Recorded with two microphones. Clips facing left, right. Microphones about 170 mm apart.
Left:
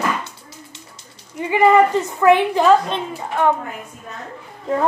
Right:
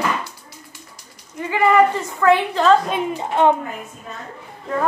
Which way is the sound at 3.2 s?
20° right (ahead or behind).